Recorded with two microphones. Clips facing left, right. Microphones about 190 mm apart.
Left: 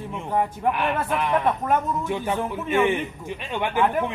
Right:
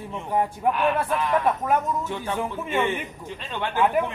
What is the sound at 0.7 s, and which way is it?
Speech, 10° left (ahead or behind).